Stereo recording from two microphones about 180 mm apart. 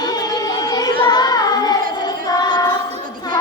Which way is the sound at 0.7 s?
20° left (ahead or behind).